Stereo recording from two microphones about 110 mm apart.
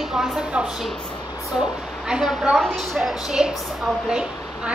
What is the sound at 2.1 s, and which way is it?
A woman's voice, 5° right (ahead or behind).